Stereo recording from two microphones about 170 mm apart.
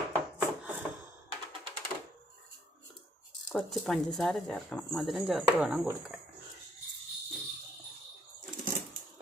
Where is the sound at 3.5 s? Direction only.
Centre (ahead or behind).